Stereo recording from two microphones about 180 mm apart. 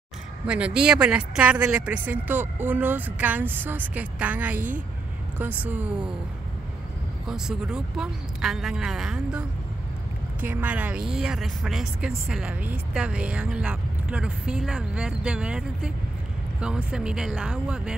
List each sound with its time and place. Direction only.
0.5 s speech: 5° right (ahead or behind)
4.6 s a woman's voice: 45° right (ahead or behind)
5.4 s speech: 10° right (ahead or behind)
7.2 s speech: 5° right (ahead or behind)